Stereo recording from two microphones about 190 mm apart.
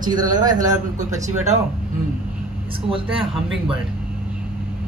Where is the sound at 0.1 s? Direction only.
20° right (ahead or behind).